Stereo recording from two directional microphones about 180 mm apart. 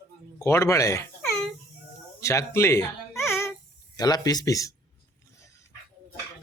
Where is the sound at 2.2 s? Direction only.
15° left (ahead or behind).